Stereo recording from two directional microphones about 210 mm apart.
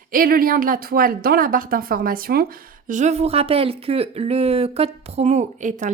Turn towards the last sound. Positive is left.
turn(degrees=-35)  # may be behind; listen again after turning